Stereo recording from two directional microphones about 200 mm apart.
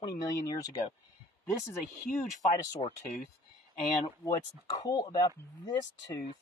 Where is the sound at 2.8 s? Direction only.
30° left (ahead or behind).